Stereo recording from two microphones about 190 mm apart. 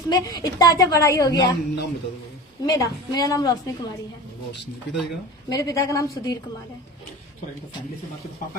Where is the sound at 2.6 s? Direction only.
20° left (ahead or behind).